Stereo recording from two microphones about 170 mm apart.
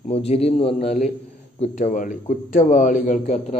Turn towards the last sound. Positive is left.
turn(degrees=45)  # may be behind; listen again after turning